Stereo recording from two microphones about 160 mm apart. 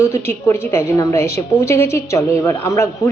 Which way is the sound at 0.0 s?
15° left (ahead or behind).